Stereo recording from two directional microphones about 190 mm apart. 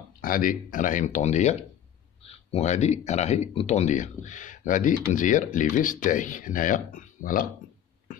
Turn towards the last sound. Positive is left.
turn(degrees=45)  # may be behind; listen again after turning